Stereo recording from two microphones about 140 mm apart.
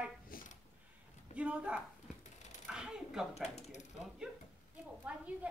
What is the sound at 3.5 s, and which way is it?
Mechanisms, 50° left (ahead or behind).